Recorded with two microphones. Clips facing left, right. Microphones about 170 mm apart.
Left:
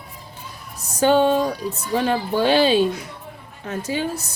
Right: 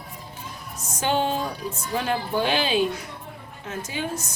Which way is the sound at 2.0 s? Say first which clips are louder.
Left 5 dB; 35° left (ahead or behind).